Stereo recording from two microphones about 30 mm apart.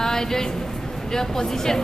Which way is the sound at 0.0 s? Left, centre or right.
Centre.